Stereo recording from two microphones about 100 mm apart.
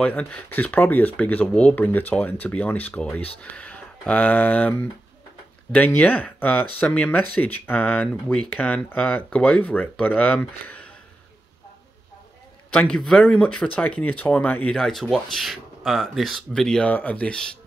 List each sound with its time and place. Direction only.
0.0 s speech: 15° left (ahead or behind)
5.9 s speech: 15° left (ahead or behind)
12.7 s speech: 10° left (ahead or behind)